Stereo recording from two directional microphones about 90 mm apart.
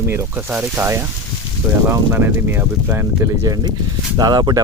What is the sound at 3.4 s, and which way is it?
Speech, 45° right (ahead or behind).